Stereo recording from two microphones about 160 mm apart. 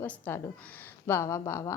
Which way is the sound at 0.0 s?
10° left (ahead or behind).